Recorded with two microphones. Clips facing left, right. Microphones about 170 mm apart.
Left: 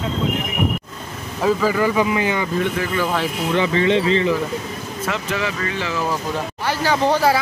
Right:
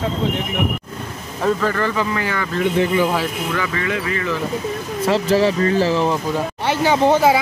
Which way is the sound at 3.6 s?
25° left (ahead or behind).